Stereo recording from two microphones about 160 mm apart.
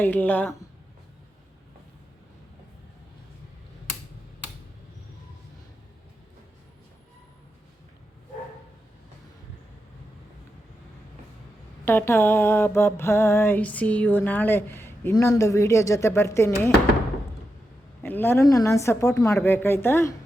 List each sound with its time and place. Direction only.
0.0 s mantra: 10° left (ahead or behind)
11.9 s mantra: 15° left (ahead or behind)
18.0 s mantra: 15° left (ahead or behind)